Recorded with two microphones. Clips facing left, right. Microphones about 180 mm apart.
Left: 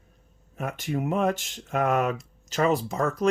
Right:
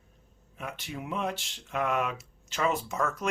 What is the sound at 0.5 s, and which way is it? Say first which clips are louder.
Speech: left 9 dB; 45° left (ahead or behind).